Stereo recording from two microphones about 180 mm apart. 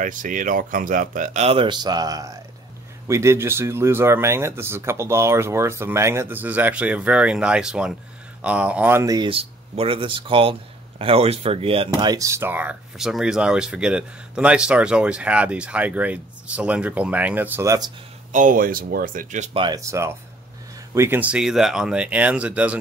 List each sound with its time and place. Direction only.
0.0 s speech: 45° right (ahead or behind); by 11.9 s 30° right (ahead or behind)
12.0 s speech: 20° right (ahead or behind)
18.3 s speech: 45° right (ahead or behind)
19.6 s speech: 20° right (ahead or behind)